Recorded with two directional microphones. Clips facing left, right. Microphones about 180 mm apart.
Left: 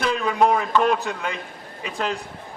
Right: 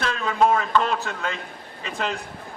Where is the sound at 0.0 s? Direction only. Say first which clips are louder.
Left 1 dB; 15° left (ahead or behind).